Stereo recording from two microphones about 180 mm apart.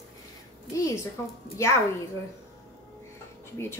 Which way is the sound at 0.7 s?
15° left (ahead or behind).